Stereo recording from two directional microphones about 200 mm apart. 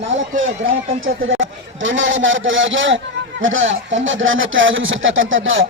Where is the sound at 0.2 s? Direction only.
75° right (ahead or behind).